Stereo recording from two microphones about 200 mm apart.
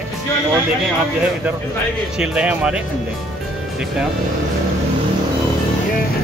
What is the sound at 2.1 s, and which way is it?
Speech, 5° right (ahead or behind).